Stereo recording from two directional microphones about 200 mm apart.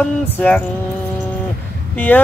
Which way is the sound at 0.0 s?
5° left (ahead or behind).